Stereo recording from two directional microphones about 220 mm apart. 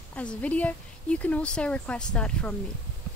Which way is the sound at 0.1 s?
5° left (ahead or behind).